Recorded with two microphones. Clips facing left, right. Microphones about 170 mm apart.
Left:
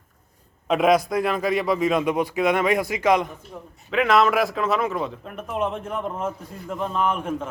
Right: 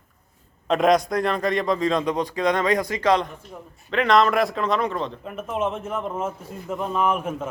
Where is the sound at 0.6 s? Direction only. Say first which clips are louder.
Even; 5° left (ahead or behind).